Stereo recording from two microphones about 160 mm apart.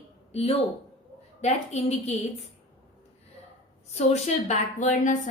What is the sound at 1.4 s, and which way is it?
Speech, 45° left (ahead or behind).